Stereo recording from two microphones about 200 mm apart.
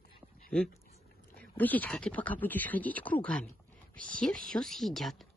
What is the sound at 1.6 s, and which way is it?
Speech, 10° left (ahead or behind).